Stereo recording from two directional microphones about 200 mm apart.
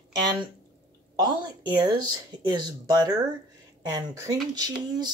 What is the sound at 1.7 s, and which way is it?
Speech, 20° right (ahead or behind).